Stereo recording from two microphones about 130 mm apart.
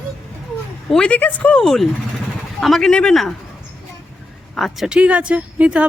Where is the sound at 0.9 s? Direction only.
10° left (ahead or behind).